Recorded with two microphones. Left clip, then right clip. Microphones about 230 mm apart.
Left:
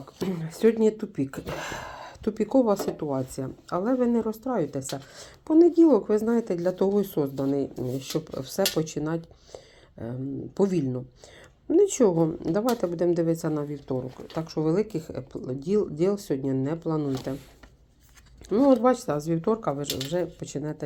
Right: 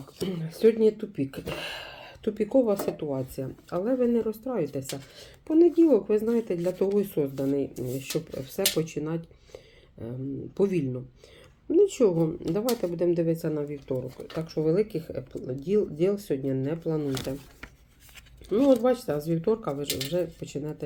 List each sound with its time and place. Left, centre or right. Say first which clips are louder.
0.2 s speech: even; left
10.6 s speech: left 1 dB; left
18.4 s speech: left 1 dB; left